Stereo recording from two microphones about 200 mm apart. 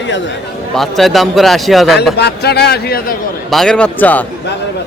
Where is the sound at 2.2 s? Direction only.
55° left (ahead or behind).